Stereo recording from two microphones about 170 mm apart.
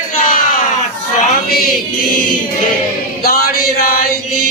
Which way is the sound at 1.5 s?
60° left (ahead or behind).